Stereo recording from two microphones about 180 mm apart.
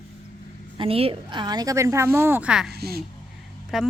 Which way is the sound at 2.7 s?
60° right (ahead or behind).